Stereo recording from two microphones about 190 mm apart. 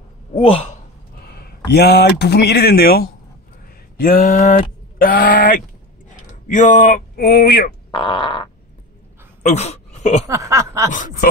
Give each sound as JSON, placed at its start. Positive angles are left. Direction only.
{"t": 0.3, "sound": "a man's voice", "side_deg": 30}
{"t": 1.2, "sound": "a sound", "side_deg": 55}
{"t": 1.7, "sound": "speech", "side_deg": 60}
{"t": 7.9, "sound": "fart", "side_deg": 25}
{"t": 9.4, "sound": "speech", "side_deg": 35}
{"t": 10.2, "sound": "a sound", "side_deg": -15}
{"t": 10.9, "sound": "speech", "side_deg": 45}